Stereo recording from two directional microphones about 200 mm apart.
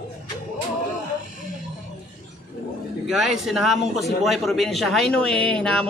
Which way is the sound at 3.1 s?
Centre (ahead or behind).